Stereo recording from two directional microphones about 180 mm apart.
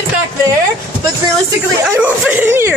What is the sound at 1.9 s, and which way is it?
Speech, 10° right (ahead or behind).